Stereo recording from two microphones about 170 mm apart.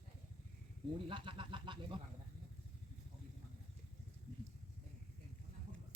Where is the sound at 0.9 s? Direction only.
30° right (ahead or behind).